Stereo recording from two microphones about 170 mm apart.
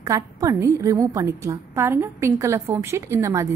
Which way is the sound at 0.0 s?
20° right (ahead or behind).